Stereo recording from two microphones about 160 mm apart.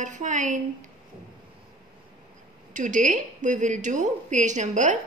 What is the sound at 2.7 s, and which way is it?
A woman's voice, 50° right (ahead or behind).